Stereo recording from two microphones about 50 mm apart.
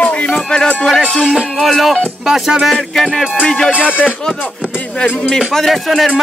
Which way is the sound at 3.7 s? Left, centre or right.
Right.